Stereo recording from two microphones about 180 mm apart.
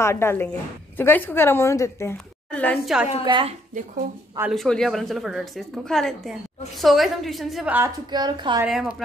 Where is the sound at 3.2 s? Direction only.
25° right (ahead or behind).